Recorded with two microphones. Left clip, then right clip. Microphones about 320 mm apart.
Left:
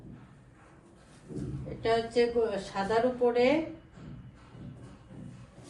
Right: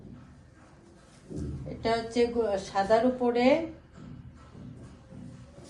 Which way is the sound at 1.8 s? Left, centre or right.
Centre.